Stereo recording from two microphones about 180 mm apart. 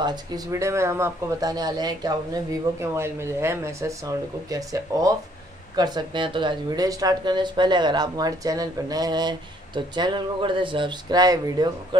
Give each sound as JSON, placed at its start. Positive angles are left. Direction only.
{"t": 0.0, "sound": "speech", "side_deg": -20}